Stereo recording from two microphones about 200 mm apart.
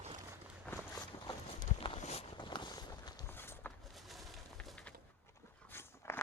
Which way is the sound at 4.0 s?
Centre (ahead or behind).